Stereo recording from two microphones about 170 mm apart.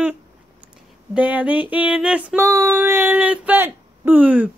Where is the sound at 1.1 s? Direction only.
10° right (ahead or behind).